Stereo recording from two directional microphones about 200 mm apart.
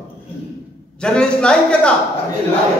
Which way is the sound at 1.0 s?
5° left (ahead or behind).